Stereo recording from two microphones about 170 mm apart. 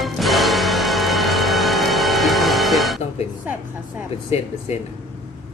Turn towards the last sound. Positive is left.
turn(degrees=40)  # may be behind; listen again after turning